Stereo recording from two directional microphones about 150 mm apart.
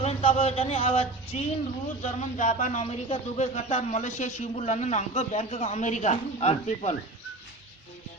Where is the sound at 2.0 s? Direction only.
55° left (ahead or behind).